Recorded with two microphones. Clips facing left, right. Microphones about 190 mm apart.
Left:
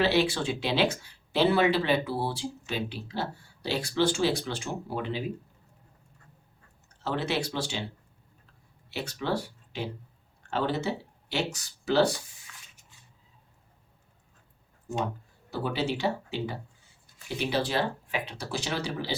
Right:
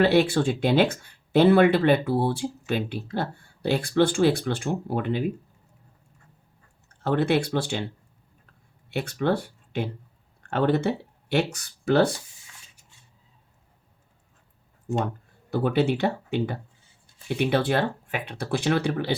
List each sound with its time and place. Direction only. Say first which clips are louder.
0.0 s speech: right 6 dB; 55° right (ahead or behind)
6.8 s speech: right 7 dB; 55° right (ahead or behind)
8.9 s speech: right 6 dB; 55° right (ahead or behind)
15.4 s speech: right 7 dB; 55° right (ahead or behind)